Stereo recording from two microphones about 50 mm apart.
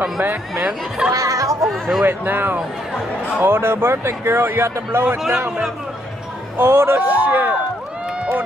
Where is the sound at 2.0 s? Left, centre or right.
Right.